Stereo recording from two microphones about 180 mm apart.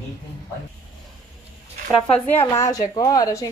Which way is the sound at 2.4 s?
20° left (ahead or behind).